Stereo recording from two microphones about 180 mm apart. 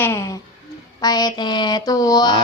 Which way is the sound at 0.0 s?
15° left (ahead or behind).